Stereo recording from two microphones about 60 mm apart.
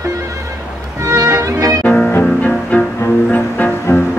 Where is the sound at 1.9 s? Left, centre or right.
Left.